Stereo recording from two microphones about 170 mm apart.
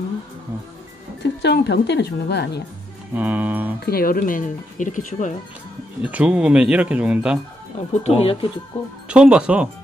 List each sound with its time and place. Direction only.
1.2 s speech: 90° left
3.2 s speech: 10° right (ahead or behind)
3.8 s speech: 60° left (ahead or behind)
6.0 s speech: 10° right (ahead or behind)
7.7 s speech: 40° left (ahead or behind)
9.1 s speech: 5° right (ahead or behind)